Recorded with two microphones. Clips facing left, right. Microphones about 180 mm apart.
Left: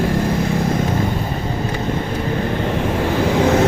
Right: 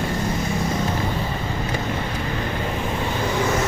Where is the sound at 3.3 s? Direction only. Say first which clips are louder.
Left 8 dB; 65° left (ahead or behind).